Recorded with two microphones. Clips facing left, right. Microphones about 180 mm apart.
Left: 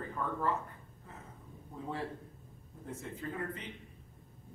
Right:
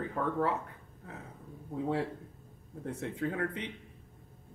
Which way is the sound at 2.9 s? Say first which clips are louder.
Right 6 dB; 70° right (ahead or behind).